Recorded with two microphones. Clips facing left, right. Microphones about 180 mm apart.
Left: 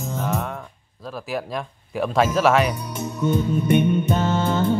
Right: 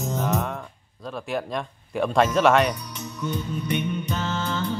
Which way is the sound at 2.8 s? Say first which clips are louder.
Left 7 dB; 50° left (ahead or behind).